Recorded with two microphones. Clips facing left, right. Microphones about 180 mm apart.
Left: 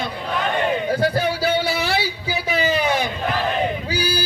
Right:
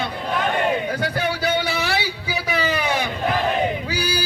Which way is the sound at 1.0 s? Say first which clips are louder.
Left 3 dB; 30° left (ahead or behind).